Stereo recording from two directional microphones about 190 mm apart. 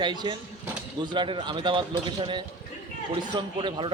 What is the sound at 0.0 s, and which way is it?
Speech, 25° right (ahead or behind).